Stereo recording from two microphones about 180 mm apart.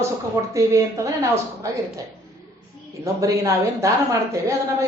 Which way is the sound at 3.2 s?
20° right (ahead or behind).